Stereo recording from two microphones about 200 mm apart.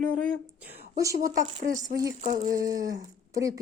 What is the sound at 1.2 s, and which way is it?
Speech, 40° right (ahead or behind).